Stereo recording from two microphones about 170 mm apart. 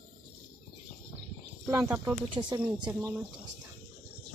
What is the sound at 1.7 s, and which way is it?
Speech, 15° right (ahead or behind).